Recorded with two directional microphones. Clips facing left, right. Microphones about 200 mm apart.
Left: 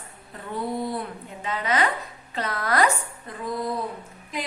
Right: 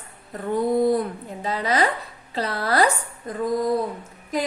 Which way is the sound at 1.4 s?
35° right (ahead or behind).